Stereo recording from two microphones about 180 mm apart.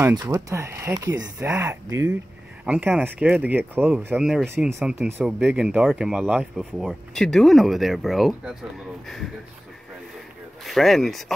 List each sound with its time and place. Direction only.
0.0 s speech: 15° right (ahead or behind); by 9.3 s centre (ahead or behind)
10.6 s speech: centre (ahead or behind)